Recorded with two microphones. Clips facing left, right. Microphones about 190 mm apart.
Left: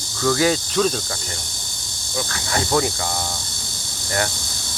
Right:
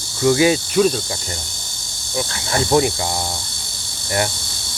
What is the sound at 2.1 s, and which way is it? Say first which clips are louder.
Speech: right 3 dB; 25° right (ahead or behind).